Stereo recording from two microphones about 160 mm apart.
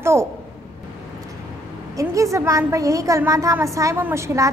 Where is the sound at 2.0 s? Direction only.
20° right (ahead or behind).